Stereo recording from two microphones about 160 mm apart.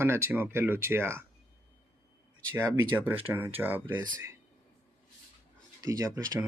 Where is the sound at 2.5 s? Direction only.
15° right (ahead or behind).